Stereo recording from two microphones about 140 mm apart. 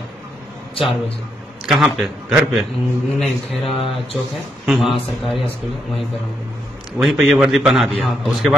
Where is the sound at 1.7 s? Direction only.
5° right (ahead or behind).